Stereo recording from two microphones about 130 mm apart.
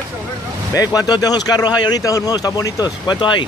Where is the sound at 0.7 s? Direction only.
30° left (ahead or behind).